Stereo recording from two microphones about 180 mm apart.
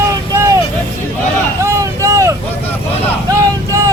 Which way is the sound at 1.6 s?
15° right (ahead or behind).